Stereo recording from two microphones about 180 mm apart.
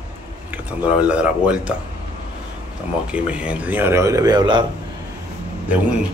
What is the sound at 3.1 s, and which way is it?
Speech, 5° right (ahead or behind).